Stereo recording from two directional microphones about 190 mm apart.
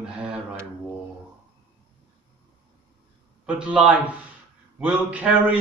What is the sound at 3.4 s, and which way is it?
A man's voice, 5° right (ahead or behind).